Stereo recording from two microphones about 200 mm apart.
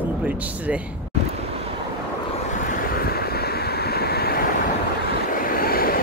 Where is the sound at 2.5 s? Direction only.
45° left (ahead or behind).